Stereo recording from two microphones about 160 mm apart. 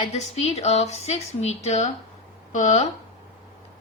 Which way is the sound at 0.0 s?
45° left (ahead or behind).